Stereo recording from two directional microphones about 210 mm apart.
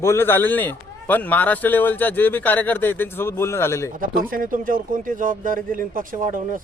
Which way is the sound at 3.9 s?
40° right (ahead or behind).